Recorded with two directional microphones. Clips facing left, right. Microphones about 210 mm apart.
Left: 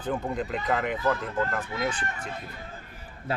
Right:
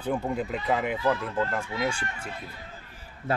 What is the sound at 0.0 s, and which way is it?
Speech, 10° right (ahead or behind).